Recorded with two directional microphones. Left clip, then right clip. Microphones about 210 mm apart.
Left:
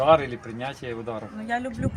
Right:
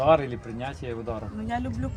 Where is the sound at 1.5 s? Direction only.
20° left (ahead or behind).